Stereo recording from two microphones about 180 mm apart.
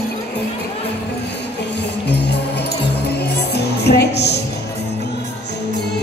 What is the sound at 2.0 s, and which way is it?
Music, 70° left (ahead or behind).